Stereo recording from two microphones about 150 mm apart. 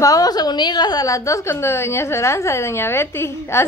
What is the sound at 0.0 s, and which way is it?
A woman's voice, 25° left (ahead or behind).